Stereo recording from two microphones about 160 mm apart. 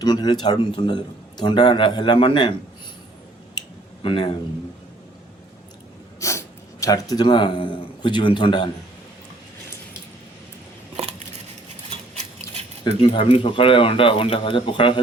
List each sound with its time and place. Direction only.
0.0 s a man's voice: 25° left (ahead or behind)
4.0 s speech: 35° left (ahead or behind)
6.1 s speech: 20° left (ahead or behind)
11.9 s a sound: 45° right (ahead or behind)
12.8 s speech: 30° left (ahead or behind)